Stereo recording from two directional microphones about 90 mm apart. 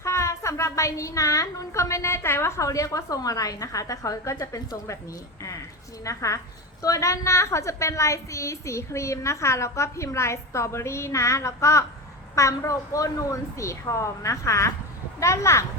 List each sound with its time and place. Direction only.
0.0 s a woman's voice: 35° left (ahead or behind)
6.1 s a woman's voice: 35° left (ahead or behind)